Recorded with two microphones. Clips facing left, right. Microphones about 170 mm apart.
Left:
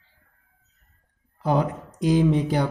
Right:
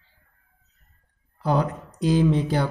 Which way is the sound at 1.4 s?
20° left (ahead or behind).